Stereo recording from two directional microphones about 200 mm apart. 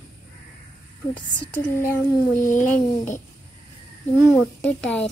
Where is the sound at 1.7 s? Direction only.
10° left (ahead or behind).